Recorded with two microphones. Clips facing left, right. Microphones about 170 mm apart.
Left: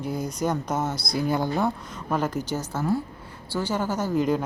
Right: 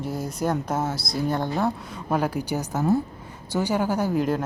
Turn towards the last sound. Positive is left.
turn(degrees=-15)  # may be behind; listen again after turning